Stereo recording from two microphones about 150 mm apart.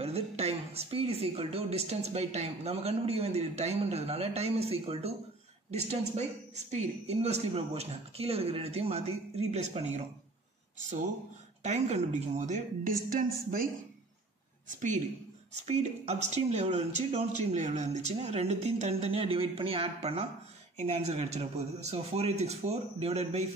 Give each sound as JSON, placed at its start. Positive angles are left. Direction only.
{"t": 0.0, "sound": "speech", "side_deg": -45}
{"t": 11.6, "sound": "speech", "side_deg": -50}
{"t": 15.5, "sound": "speech", "side_deg": -45}